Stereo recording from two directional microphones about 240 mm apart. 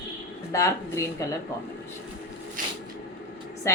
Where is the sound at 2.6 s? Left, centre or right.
Right.